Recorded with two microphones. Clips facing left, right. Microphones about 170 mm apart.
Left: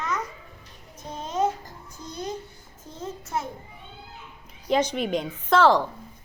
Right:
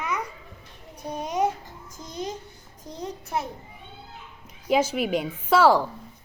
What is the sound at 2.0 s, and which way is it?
Child singing, 20° right (ahead or behind).